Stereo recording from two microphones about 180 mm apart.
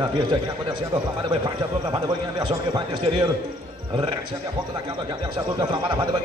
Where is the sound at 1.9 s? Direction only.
25° right (ahead or behind).